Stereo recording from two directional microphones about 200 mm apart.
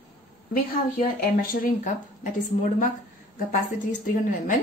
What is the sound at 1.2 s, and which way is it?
Speech, 40° left (ahead or behind).